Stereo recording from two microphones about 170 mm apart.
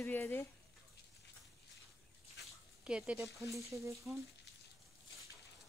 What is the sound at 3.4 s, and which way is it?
Speech, 15° right (ahead or behind).